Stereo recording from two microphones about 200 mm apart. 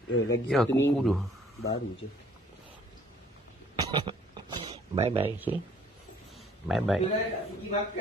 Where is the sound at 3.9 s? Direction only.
20° right (ahead or behind).